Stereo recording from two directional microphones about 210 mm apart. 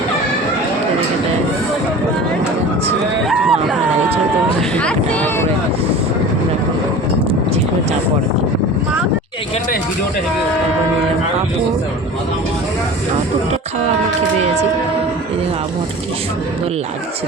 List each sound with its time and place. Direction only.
3.2 s hubbub: centre (ahead or behind)
4.8 s speech: 5° left (ahead or behind)
7.2 s vehicle: 25° right (ahead or behind)